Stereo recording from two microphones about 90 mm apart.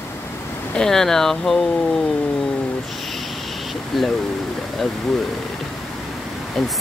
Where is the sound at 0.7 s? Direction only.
5° left (ahead or behind).